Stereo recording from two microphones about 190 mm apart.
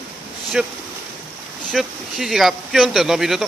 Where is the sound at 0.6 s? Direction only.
5° right (ahead or behind).